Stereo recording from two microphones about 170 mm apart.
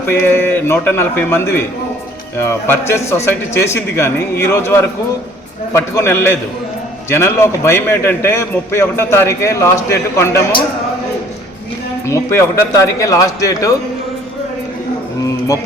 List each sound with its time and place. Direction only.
0.1 s a man's voice: 15° left (ahead or behind)
12.0 s speech: 15° left (ahead or behind)